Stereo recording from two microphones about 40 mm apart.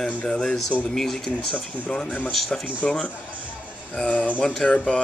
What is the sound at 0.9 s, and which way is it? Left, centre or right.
Speech, centre.